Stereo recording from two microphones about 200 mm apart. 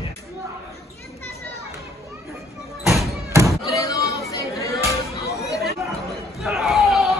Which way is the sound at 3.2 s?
15° right (ahead or behind).